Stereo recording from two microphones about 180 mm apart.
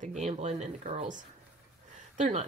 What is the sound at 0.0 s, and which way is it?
A woman's voice, 40° right (ahead or behind).